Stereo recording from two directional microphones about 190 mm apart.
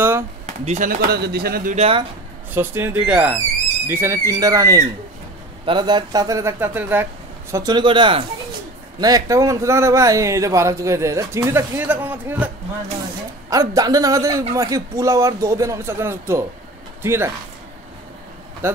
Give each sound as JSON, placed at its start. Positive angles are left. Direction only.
{"t": 0.7, "sound": "a man's voice", "side_deg": -40}
{"t": 1.1, "sound": "speech", "side_deg": -55}
{"t": 1.8, "sound": "speech", "side_deg": -30}
{"t": 2.5, "sound": "speech", "side_deg": -10}
{"t": 7.5, "sound": "speech", "side_deg": -20}
{"t": 13.5, "sound": "speech", "side_deg": -20}
{"t": 18.6, "sound": "speech", "side_deg": -15}